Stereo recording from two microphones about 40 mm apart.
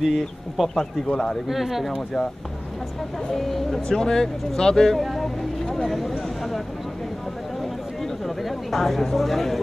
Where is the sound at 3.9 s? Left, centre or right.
Centre.